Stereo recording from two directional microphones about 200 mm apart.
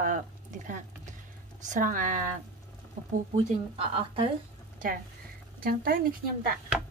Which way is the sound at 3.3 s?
25° right (ahead or behind).